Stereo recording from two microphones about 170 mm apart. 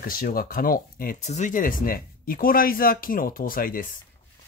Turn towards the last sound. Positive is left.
turn(degrees=55)  # may be behind; listen again after turning